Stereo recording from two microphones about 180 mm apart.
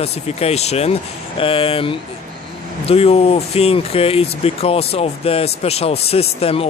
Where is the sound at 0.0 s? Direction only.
35° left (ahead or behind).